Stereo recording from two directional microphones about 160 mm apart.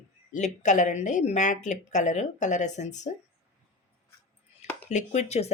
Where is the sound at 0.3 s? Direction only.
50° left (ahead or behind).